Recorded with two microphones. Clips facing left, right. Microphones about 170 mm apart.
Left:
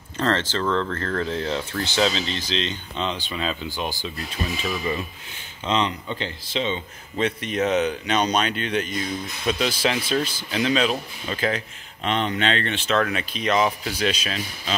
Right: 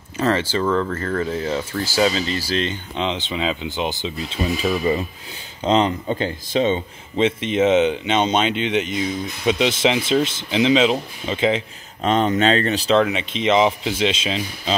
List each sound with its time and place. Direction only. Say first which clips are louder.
0.2 s speech: right 4 dB; 10° right (ahead or behind)
2.5 s speech: right 4 dB; 55° right (ahead or behind)
3.0 s speech: right 4 dB; 20° right (ahead or behind)
5.6 s speech: right 6 dB; 40° right (ahead or behind)
7.2 s speech: right 5 dB; 25° right (ahead or behind)
12.0 s speech: right 6 dB; 40° right (ahead or behind)
13.0 s speech: right 5 dB; 20° right (ahead or behind)